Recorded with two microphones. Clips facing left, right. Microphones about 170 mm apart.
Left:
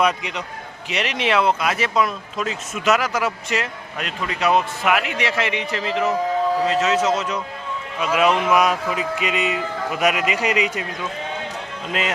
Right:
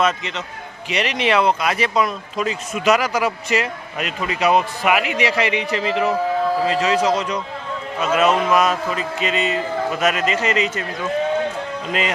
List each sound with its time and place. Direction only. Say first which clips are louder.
0.0 s a man's voice: even; 10° left (ahead or behind)
11.9 s speech: right 1 dB; 5° left (ahead or behind)